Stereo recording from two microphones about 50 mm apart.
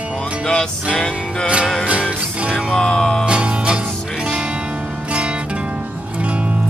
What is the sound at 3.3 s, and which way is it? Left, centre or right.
Music, right.